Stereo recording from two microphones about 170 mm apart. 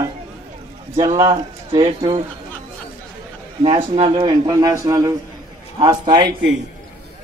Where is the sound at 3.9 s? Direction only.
30° right (ahead or behind).